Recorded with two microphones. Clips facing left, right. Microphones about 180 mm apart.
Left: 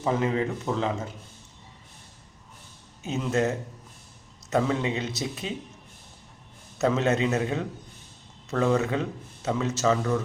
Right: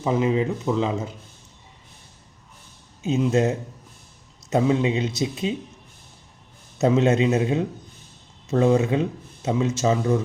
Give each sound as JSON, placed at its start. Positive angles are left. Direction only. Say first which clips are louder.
{"t": 0.0, "sound": "speech", "louder": "right 4 dB", "side_deg": -15}
{"t": 3.0, "sound": "speech", "louder": "right 5 dB", "side_deg": -20}
{"t": 6.7, "sound": "speech", "louder": "right 5 dB", "side_deg": -15}